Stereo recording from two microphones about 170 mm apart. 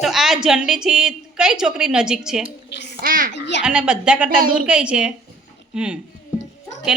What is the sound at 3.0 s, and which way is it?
Speech, 55° right (ahead or behind).